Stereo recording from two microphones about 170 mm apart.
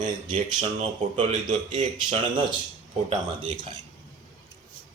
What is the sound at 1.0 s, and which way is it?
Speech, 45° right (ahead or behind).